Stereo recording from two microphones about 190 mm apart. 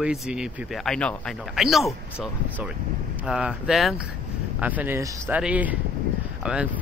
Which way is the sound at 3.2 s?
5° right (ahead or behind).